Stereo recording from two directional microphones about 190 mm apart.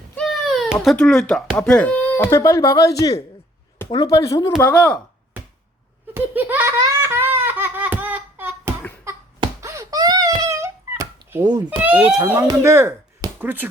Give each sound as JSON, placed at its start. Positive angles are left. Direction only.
{"t": 0.2, "sound": "speech", "side_deg": 0}
{"t": 4.6, "sound": "speech", "side_deg": 5}
{"t": 6.1, "sound": "laughter", "side_deg": -10}
{"t": 9.0, "sound": "wail", "side_deg": -15}
{"t": 11.4, "sound": "speech", "side_deg": -20}
{"t": 11.8, "sound": "speech", "side_deg": -5}